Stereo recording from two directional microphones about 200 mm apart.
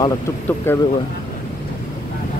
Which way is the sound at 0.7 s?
10° left (ahead or behind).